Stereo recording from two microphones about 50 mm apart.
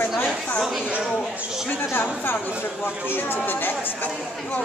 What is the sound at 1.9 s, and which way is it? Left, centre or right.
Speech, left.